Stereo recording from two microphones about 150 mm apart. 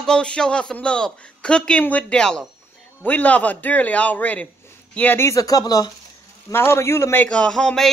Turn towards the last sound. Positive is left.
turn(degrees=5)  # may be behind; listen again after turning